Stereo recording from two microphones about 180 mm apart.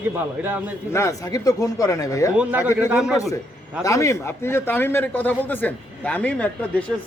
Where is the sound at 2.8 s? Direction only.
5° right (ahead or behind).